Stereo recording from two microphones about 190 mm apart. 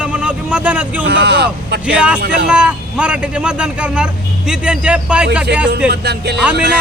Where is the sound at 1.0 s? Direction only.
65° right (ahead or behind).